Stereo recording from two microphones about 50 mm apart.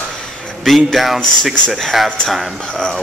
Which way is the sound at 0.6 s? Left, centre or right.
Centre.